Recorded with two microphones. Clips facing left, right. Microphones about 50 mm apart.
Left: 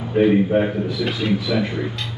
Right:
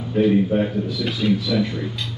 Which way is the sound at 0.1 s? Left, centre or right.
Left.